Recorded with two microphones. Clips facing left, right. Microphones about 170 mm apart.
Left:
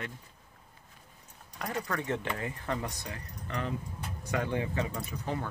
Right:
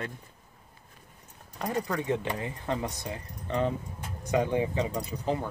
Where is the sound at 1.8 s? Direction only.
15° right (ahead or behind).